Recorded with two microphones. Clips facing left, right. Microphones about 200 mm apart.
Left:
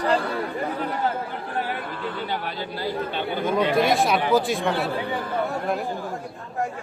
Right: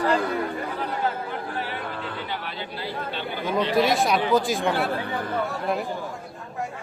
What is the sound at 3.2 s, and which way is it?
Speech, 50° left (ahead or behind).